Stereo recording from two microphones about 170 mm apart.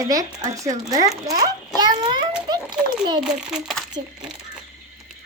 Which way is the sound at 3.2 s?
5° right (ahead or behind).